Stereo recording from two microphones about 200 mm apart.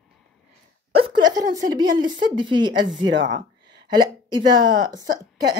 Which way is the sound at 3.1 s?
65° right (ahead or behind).